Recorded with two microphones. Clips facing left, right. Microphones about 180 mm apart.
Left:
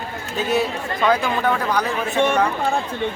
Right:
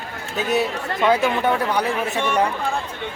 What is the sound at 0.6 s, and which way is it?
Speech, 20° right (ahead or behind).